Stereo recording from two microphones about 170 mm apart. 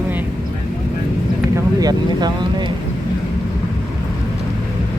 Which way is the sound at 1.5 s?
20° right (ahead or behind).